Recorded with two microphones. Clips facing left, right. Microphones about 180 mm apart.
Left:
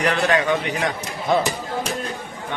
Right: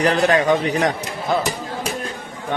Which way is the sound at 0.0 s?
35° right (ahead or behind).